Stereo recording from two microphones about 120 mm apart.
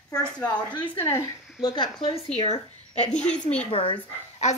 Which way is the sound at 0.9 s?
25° left (ahead or behind).